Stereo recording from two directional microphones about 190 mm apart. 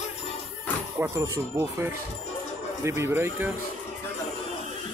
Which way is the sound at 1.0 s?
15° right (ahead or behind).